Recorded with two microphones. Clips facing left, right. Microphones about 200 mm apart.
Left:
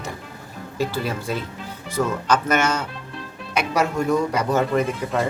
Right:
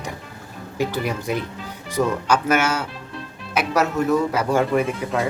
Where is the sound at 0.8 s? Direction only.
15° right (ahead or behind).